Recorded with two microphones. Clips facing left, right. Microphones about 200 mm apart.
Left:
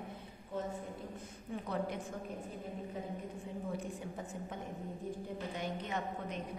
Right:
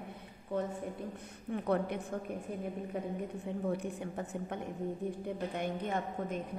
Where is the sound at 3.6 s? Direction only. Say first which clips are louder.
Right 6 dB; 65° right (ahead or behind).